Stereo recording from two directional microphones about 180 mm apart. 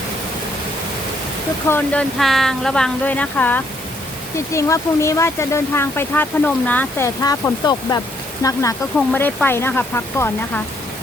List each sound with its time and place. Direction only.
1.6 s speech: 10° left (ahead or behind)